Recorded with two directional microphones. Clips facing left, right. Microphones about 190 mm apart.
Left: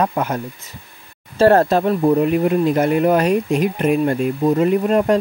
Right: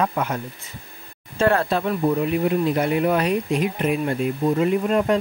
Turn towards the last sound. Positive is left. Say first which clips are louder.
# left 4 dB
turn(degrees=45)  # may be behind; listen again after turning